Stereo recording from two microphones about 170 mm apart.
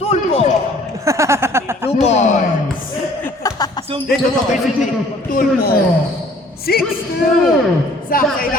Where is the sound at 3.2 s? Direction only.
20° left (ahead or behind).